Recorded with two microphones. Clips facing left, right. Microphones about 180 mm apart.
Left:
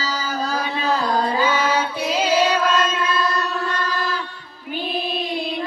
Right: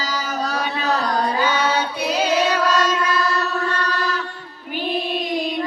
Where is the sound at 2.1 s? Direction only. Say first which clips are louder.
Left 1 dB; 25° left (ahead or behind).